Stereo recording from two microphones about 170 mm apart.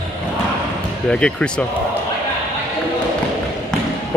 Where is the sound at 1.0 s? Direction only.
5° left (ahead or behind).